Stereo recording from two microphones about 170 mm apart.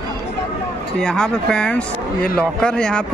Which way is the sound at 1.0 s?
5° left (ahead or behind).